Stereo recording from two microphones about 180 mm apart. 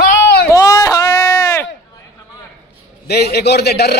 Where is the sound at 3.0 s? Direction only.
60° left (ahead or behind).